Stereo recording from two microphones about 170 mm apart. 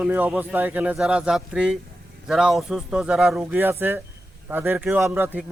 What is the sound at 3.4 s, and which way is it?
Speech, 15° right (ahead or behind).